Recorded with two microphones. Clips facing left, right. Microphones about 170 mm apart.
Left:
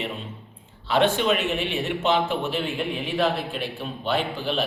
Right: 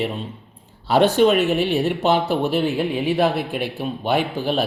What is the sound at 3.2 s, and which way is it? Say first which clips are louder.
Speech: right 4 dB; 10° right (ahead or behind).